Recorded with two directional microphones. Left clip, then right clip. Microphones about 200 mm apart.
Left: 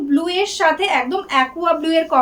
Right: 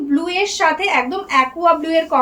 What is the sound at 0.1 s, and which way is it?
A woman's voice, 20° left (ahead or behind).